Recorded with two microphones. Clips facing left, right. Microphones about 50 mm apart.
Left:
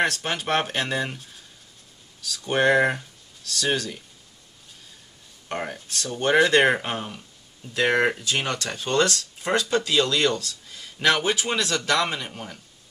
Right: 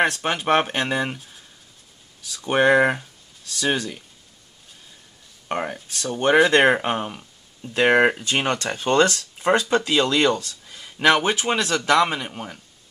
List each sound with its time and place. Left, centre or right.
0.1 s speech: centre
2.4 s speech: right
5.6 s speech: centre; by 9.1 s right
9.1 s speech: centre